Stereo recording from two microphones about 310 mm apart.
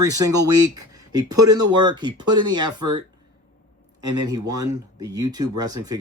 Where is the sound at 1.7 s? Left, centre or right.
Centre.